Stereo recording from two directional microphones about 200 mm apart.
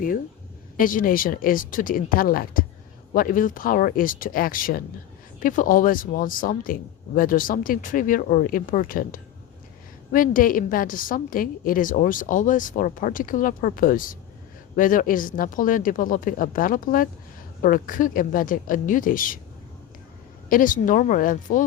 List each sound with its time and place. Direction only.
0.8 s a woman's voice: 45° left (ahead or behind)
20.5 s speech: 40° left (ahead or behind)